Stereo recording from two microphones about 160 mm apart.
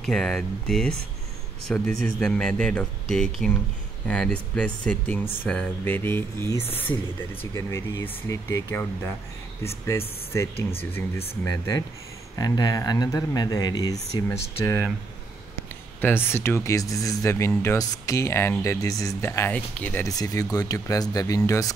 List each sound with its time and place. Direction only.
0.0 s a man's voice: 5° left (ahead or behind)
16.0 s speech: 15° left (ahead or behind)
20.1 s speech: 20° left (ahead or behind)